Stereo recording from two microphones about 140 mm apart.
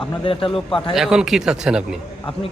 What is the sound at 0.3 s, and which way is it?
Speech, 40° left (ahead or behind).